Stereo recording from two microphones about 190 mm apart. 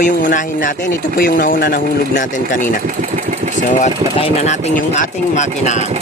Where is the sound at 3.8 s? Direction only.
35° left (ahead or behind).